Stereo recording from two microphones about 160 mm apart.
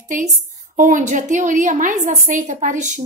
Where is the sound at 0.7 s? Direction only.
50° right (ahead or behind).